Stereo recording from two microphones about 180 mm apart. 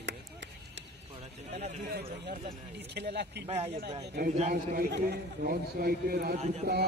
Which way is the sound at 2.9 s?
65° right (ahead or behind).